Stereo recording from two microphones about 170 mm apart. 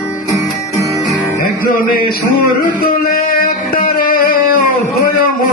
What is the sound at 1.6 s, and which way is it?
Music, 55° left (ahead or behind).